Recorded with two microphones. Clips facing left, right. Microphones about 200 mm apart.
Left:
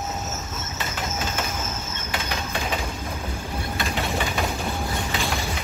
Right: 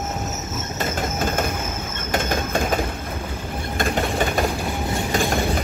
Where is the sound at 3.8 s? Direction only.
50° right (ahead or behind).